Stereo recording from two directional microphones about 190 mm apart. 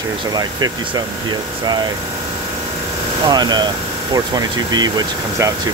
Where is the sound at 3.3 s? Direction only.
20° right (ahead or behind).